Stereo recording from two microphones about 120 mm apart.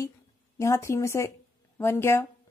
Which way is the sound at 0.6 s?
25° left (ahead or behind).